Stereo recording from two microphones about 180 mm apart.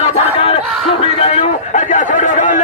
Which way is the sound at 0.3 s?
30° left (ahead or behind).